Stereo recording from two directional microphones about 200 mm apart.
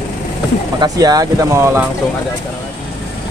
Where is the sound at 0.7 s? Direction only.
20° right (ahead or behind).